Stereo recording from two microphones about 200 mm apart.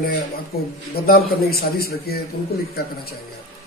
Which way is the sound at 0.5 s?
50° left (ahead or behind).